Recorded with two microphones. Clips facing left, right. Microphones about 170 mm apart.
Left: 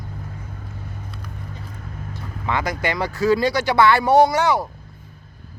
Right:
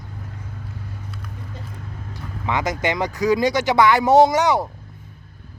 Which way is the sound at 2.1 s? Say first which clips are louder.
Even; 15° right (ahead or behind).